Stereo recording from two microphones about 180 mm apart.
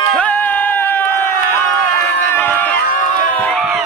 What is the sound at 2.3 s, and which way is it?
Crowd, 10° left (ahead or behind).